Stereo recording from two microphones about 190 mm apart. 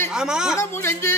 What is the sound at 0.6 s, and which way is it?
Speech, 15° left (ahead or behind).